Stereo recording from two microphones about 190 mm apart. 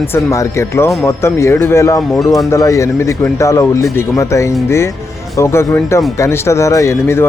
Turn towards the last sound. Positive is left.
turn(degrees=15)  # may be behind; listen again after turning